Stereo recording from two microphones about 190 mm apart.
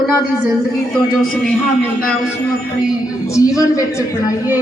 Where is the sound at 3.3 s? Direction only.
15° left (ahead or behind).